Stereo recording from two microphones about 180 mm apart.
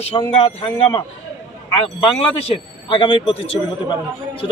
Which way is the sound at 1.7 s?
30° left (ahead or behind).